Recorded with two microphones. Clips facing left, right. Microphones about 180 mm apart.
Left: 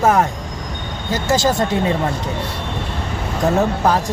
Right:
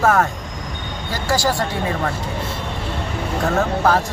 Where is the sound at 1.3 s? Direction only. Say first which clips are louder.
Left 3 dB; 20° left (ahead or behind).